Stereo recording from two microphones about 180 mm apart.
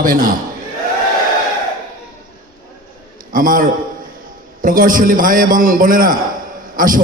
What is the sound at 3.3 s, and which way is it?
A man's voice, 50° right (ahead or behind).